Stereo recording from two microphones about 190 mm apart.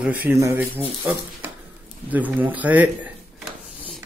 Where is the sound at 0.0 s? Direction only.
10° right (ahead or behind).